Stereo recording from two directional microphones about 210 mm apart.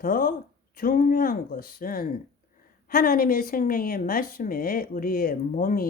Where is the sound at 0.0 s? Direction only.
40° left (ahead or behind).